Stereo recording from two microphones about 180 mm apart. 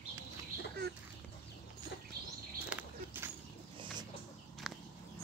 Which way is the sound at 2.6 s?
10° right (ahead or behind).